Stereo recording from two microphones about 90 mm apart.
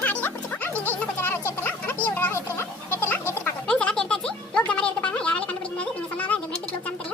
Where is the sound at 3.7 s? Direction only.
10° left (ahead or behind).